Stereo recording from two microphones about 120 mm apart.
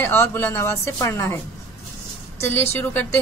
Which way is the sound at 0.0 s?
20° left (ahead or behind).